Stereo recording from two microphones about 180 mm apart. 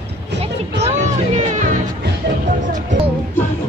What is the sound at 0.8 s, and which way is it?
Music, 40° right (ahead or behind).